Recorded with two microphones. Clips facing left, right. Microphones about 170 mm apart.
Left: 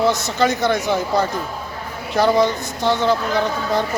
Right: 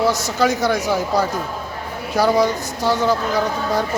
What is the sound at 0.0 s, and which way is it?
Speech, 5° right (ahead or behind).